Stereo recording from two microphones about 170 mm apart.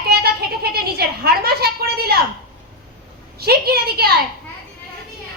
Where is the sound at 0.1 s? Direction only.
65° right (ahead or behind).